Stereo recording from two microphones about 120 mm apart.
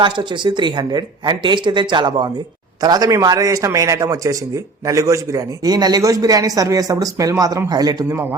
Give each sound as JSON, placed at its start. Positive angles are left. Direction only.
{"t": 0.0, "sound": "a man's voice", "side_deg": -40}
{"t": 8.1, "sound": "a man's voice", "side_deg": -20}